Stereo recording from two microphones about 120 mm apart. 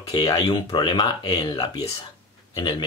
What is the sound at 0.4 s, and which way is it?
Speech, 50° left (ahead or behind).